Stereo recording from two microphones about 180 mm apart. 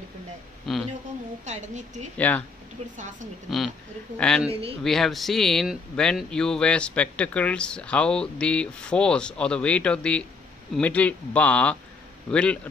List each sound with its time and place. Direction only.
0.7 s speech: centre (ahead or behind)
1.4 s a woman's voice: 40° right (ahead or behind)
2.1 s a man's voice: 10° left (ahead or behind)
2.8 s a woman's voice: 35° right (ahead or behind)
3.4 s speech: centre (ahead or behind)
4.5 s a woman's voice: 35° right (ahead or behind)
4.8 s a man's voice: centre (ahead or behind)